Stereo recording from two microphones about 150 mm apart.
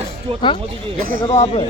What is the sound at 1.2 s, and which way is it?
Speech, 45° left (ahead or behind).